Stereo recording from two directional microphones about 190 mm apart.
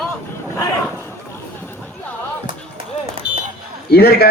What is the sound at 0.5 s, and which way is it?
Speech, 15° left (ahead or behind).